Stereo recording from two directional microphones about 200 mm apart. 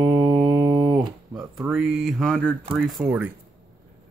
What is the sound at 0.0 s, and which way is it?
Music, 15° right (ahead or behind).